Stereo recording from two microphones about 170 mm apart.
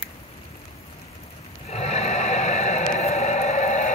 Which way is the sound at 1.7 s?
40° left (ahead or behind).